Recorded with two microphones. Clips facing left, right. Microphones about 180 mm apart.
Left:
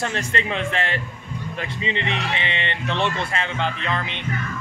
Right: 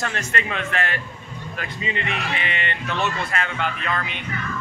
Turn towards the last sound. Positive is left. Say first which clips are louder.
# left 1 dB
turn(degrees=25)  # may be behind; listen again after turning